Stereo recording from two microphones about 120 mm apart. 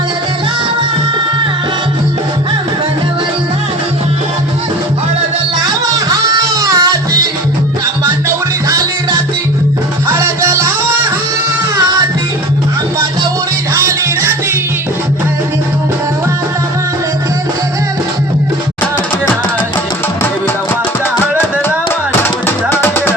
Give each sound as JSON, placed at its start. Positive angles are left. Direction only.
{"t": 5.6, "sound": "music", "side_deg": -30}
{"t": 10.1, "sound": "music", "side_deg": -20}
{"t": 13.7, "sound": "music", "side_deg": -25}
{"t": 22.7, "sound": "music", "side_deg": 20}